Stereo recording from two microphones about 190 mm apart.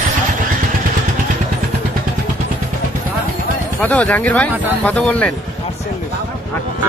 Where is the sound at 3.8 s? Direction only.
10° left (ahead or behind).